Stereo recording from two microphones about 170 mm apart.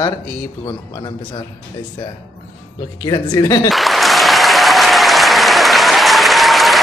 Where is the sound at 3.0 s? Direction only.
20° left (ahead or behind).